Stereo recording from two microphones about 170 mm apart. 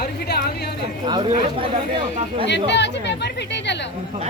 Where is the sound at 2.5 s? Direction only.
90° left.